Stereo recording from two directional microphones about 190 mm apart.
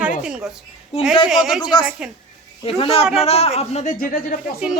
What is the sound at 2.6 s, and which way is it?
Speech, 30° left (ahead or behind).